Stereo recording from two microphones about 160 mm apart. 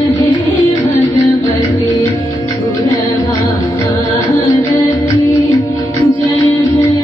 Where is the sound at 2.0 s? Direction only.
20° left (ahead or behind).